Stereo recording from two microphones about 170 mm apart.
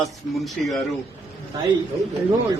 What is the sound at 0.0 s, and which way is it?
Speech, centre (ahead or behind).